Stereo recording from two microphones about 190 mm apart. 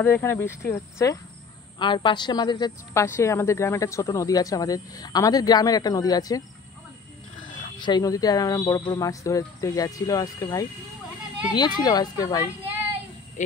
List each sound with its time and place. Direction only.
0.0 s speech: 10° left (ahead or behind)
1.8 s a woman's voice: 25° left (ahead or behind)
7.8 s a woman's voice: 20° left (ahead or behind)